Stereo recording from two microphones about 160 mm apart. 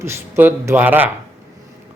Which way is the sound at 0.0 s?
15° right (ahead or behind).